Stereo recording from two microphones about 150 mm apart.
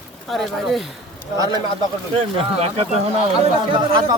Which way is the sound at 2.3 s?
35° right (ahead or behind).